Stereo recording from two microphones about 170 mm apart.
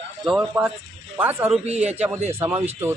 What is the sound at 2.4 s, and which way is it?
Speech, 10° right (ahead or behind).